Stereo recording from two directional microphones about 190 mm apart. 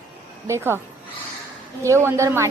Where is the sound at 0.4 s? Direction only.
15° right (ahead or behind).